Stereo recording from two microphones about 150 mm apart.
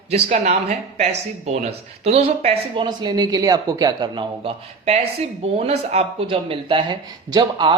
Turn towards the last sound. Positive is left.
turn(degrees=-30)  # may be behind; listen again after turning